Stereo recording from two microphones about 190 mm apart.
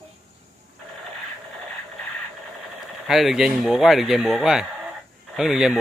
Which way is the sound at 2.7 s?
Centre (ahead or behind).